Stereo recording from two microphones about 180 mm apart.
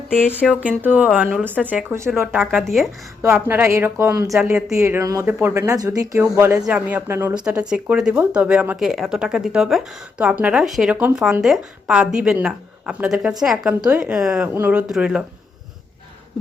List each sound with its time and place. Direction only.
0.2 s speech: 10° left (ahead or behind)
0.8 s a woman's voice: 10° right (ahead or behind)
4.8 s a woman's voice: 15° right (ahead or behind)